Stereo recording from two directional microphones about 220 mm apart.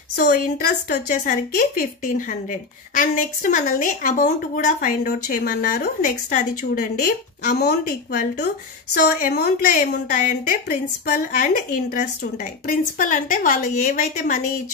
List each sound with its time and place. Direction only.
0.1 s a woman's voice: 40° left (ahead or behind)